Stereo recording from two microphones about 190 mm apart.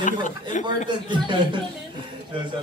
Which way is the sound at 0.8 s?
25° right (ahead or behind).